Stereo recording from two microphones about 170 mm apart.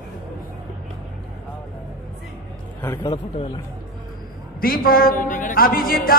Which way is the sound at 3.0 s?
35° left (ahead or behind).